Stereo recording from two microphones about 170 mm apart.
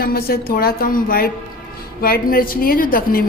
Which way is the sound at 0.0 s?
65° left (ahead or behind).